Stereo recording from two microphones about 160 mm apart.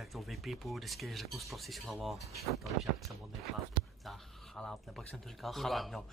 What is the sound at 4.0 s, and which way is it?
Speech, centre (ahead or behind).